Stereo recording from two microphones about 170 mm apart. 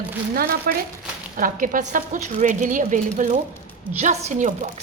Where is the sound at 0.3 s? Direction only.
60° right (ahead or behind).